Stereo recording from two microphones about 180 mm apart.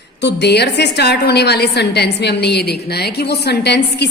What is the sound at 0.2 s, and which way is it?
A woman's voice, 70° left (ahead or behind).